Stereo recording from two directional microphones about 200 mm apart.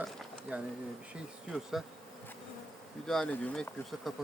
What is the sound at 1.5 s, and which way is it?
Speech, centre (ahead or behind).